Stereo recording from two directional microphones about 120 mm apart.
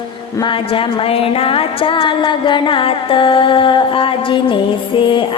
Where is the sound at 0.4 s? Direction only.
45° left (ahead or behind).